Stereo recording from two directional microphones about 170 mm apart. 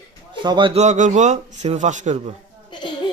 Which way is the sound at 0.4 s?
30° right (ahead or behind).